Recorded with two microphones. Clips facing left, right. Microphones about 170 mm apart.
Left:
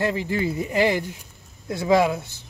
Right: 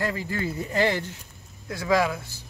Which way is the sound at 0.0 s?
20° left (ahead or behind).